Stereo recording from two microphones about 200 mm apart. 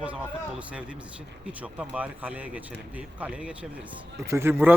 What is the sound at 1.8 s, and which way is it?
Speech, 5° right (ahead or behind).